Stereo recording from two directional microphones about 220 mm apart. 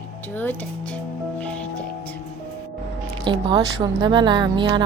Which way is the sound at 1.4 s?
5° left (ahead or behind).